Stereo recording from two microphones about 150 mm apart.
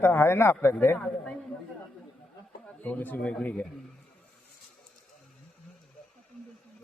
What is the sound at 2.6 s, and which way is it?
Speech, 10° left (ahead or behind).